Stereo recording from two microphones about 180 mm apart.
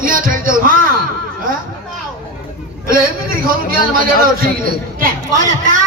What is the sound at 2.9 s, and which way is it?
A man's voice, 50° right (ahead or behind).